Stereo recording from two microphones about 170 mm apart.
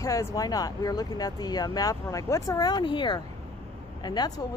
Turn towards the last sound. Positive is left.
turn(degrees=25)  # may be behind; listen again after turning